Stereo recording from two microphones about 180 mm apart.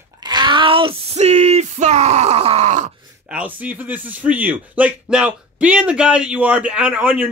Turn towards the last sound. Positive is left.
turn(degrees=-10)  # may be behind; listen again after turning